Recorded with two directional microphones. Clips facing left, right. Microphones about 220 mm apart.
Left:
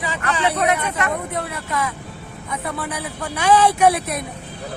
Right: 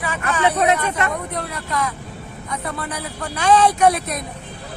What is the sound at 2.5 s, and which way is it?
A man's voice, 5° left (ahead or behind).